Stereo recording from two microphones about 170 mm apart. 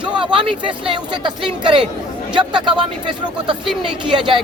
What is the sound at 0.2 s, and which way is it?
Speech, 30° right (ahead or behind).